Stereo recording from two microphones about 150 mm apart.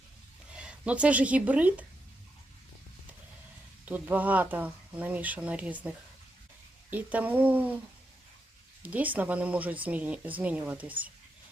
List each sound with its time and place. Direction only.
0.5 s speech: 5° right (ahead or behind)
3.8 s speech: 10° right (ahead or behind)
8.8 s speech: 10° right (ahead or behind)